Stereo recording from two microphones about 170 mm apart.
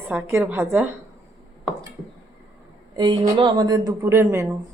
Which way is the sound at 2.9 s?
25° right (ahead or behind).